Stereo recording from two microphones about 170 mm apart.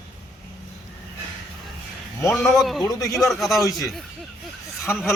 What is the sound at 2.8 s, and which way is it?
Speech, 20° left (ahead or behind).